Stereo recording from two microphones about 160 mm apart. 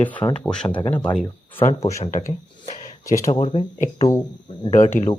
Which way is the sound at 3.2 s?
20° left (ahead or behind).